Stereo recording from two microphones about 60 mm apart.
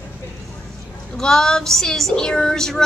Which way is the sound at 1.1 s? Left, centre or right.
Centre.